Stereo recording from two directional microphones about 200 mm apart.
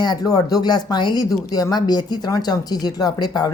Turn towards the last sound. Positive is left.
turn(degrees=20)  # may be behind; listen again after turning